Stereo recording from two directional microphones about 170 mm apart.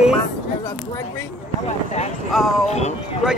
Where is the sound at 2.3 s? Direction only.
Centre (ahead or behind).